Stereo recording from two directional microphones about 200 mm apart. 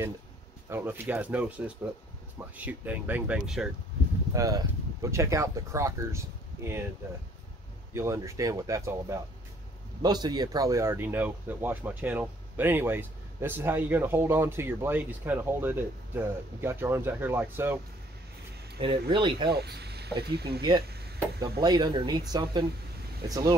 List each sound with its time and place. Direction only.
0.7 s speech: 10° right (ahead or behind)
4.3 s speech: 15° right (ahead or behind)
7.9 s speech: 15° right (ahead or behind)
18.8 s speech: 25° right (ahead or behind)
19.5 s speech: 55° right (ahead or behind)
20.8 s a sound: 50° right (ahead or behind)
21.4 s speech: 20° right (ahead or behind)